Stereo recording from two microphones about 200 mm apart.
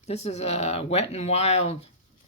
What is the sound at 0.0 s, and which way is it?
Speech, 35° left (ahead or behind).